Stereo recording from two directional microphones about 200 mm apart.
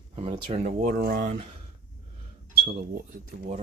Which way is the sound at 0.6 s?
45° right (ahead or behind).